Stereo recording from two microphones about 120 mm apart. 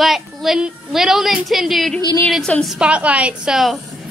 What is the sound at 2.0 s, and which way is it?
Speech, 35° left (ahead or behind).